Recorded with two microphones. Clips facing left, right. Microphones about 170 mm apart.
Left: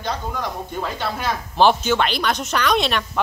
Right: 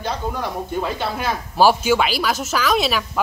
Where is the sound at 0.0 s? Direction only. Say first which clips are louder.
Right 1 dB; 10° right (ahead or behind).